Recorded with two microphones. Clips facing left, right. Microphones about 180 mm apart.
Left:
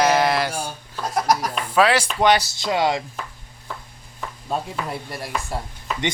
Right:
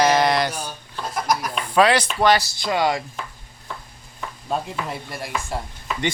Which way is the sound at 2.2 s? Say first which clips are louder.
Left 1 dB; 20° left (ahead or behind).